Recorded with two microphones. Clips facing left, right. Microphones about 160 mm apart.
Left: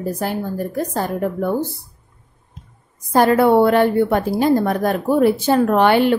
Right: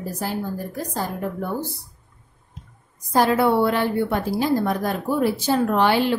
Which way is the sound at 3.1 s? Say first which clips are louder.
Left 5 dB; 55° left (ahead or behind).